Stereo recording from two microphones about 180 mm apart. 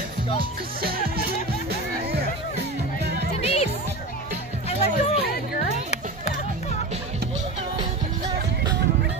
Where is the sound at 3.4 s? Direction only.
35° left (ahead or behind).